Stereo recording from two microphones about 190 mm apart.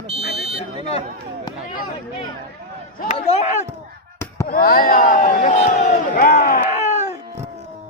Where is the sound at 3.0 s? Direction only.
35° left (ahead or behind).